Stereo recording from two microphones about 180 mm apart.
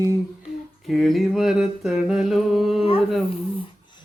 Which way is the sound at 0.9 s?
Centre (ahead or behind).